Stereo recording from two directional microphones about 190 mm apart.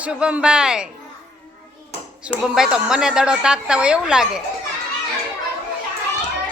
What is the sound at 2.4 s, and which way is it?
A woman's voice, 5° right (ahead or behind).